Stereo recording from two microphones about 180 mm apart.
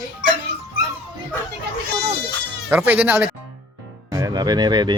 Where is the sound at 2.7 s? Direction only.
10° right (ahead or behind).